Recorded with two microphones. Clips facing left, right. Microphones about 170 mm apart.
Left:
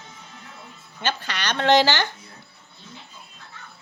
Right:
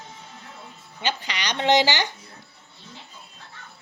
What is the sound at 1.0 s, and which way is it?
Speech, 15° right (ahead or behind).